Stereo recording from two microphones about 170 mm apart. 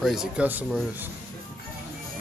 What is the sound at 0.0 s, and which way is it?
Speech, 5° right (ahead or behind).